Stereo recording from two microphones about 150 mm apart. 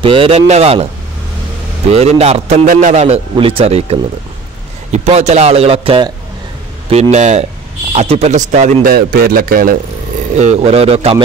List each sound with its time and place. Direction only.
0.0 s speech: 35° right (ahead or behind)
1.9 s a man's voice: 45° right (ahead or behind)
6.9 s a man's voice: 45° right (ahead or behind)
8.9 s a man's voice: 80° right
10.4 s speech: 45° right (ahead or behind)